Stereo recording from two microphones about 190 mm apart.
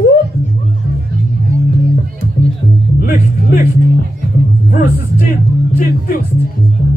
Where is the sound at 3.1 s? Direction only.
45° left (ahead or behind).